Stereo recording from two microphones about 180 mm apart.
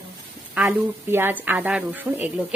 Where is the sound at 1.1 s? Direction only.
10° right (ahead or behind).